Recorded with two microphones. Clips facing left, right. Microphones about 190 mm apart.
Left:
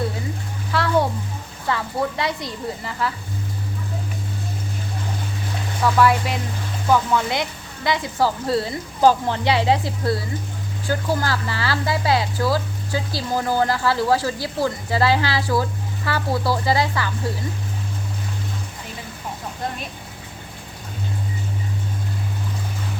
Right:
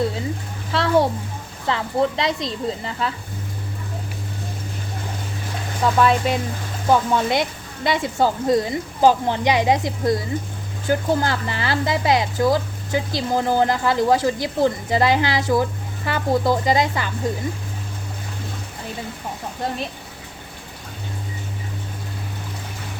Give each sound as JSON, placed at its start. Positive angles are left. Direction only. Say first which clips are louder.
{"t": 0.7, "sound": "a sound", "louder": "right 1 dB", "side_deg": -25}
{"t": 1.6, "sound": "speech", "louder": "right 3 dB", "side_deg": -25}
{"t": 5.8, "sound": "speech", "louder": "even", "side_deg": -25}